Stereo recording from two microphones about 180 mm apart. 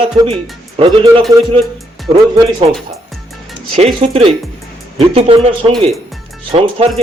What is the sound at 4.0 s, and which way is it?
Speech, 35° right (ahead or behind).